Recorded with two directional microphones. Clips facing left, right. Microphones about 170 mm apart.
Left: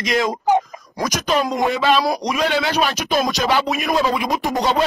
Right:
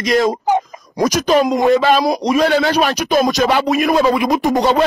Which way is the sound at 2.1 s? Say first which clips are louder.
Right 5 dB; 30° right (ahead or behind).